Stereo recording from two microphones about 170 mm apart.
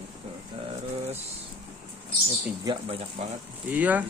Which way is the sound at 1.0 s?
40° right (ahead or behind).